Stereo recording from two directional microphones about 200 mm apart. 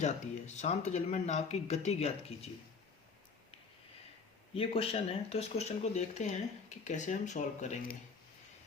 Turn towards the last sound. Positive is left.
turn(degrees=40)  # may be behind; listen again after turning